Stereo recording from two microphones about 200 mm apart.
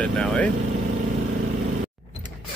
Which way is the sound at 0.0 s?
5° left (ahead or behind).